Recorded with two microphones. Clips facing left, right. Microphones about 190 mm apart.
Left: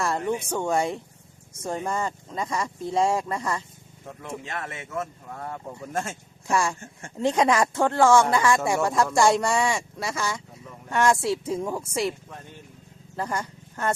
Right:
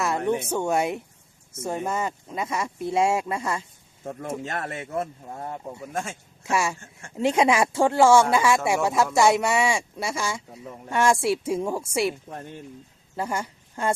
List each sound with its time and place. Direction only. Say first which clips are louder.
0.0 s a sound: right 2 dB; centre (ahead or behind)
0.5 s speech: right 1 dB; 5° right (ahead or behind)
4.0 s speech: right 5 dB; 45° right (ahead or behind); by 5.6 s 25° right (ahead or behind)
5.6 s speech: left 3 dB; 5° right (ahead or behind)
13.1 s speech: right 1 dB; 10° right (ahead or behind)